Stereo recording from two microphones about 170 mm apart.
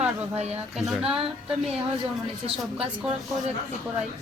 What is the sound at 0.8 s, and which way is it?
Speech, 5° right (ahead or behind).